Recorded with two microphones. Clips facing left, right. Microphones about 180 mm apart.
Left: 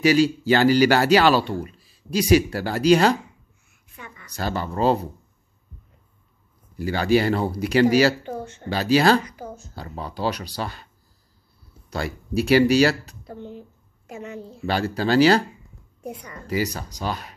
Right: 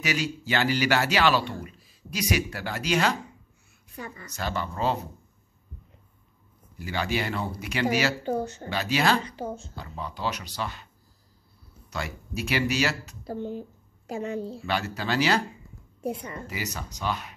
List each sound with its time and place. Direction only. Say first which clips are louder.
0.0 s speech: left 12 dB; 30° left (ahead or behind)
3.9 s a woman's voice: right 4 dB; 40° right (ahead or behind)
4.3 s speech: left 5 dB; 40° left (ahead or behind)
6.8 s speech: left 9 dB; 35° left (ahead or behind)
8.2 s speech: right 4 dB; 35° right (ahead or behind)
8.6 s speech: left 8 dB; 35° left (ahead or behind)
9.2 s speech: right 3 dB; 30° right (ahead or behind)
9.8 s speech: left 5 dB; 35° left (ahead or behind)
11.9 s speech: left 7 dB; 35° left (ahead or behind)
13.2 s a woman's voice: right 4 dB; 35° right (ahead or behind)
14.7 s speech: left 8 dB; 35° left (ahead or behind)
16.0 s a woman's voice: right 4 dB; 30° right (ahead or behind)
16.4 s speech: left 14 dB; 35° left (ahead or behind)